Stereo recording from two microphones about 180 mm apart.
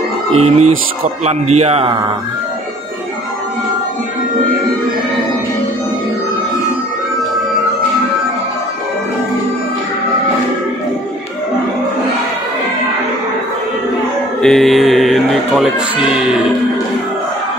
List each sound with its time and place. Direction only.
0.3 s speech: 35° right (ahead or behind)
14.4 s speech: centre (ahead or behind)